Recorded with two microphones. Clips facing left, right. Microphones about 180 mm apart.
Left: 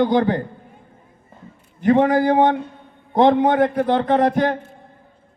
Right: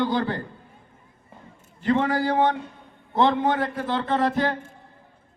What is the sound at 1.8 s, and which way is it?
A man's voice, 50° left (ahead or behind).